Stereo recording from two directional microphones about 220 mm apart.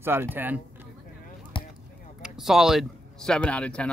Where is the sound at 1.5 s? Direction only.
20° left (ahead or behind).